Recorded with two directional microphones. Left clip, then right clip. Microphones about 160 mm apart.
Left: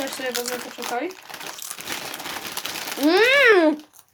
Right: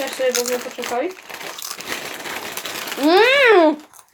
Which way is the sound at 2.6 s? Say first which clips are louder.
Right 1 dB; 45° left (ahead or behind).